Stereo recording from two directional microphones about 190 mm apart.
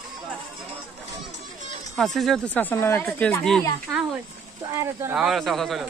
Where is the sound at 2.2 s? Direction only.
5° left (ahead or behind).